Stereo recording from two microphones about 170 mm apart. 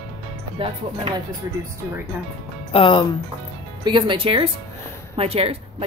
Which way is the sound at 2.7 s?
30° left (ahead or behind).